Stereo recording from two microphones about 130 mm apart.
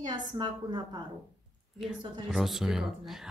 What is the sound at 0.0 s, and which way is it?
Speech, 35° right (ahead or behind).